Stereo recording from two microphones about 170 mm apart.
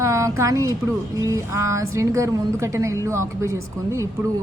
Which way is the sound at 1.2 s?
15° right (ahead or behind).